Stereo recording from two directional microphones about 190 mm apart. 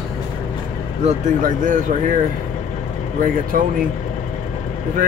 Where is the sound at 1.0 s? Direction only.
40° right (ahead or behind).